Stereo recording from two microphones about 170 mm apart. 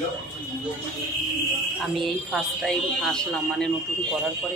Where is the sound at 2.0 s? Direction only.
Centre (ahead or behind).